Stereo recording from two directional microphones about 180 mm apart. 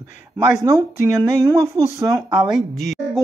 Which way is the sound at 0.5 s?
10° right (ahead or behind).